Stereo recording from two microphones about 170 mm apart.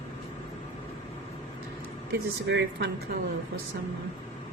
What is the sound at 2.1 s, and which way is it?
Speech, 75° right (ahead or behind).